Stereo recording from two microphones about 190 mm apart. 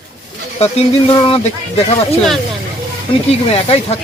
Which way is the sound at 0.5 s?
30° left (ahead or behind).